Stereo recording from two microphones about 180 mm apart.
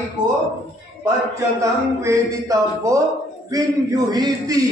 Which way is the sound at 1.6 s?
15° right (ahead or behind).